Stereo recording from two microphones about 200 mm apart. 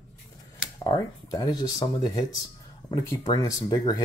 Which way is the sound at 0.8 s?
20° left (ahead or behind).